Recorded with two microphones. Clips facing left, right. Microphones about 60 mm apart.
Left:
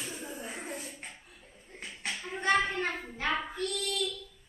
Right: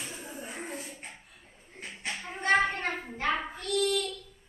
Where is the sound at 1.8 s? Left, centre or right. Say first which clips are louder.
Right 1 dB; right.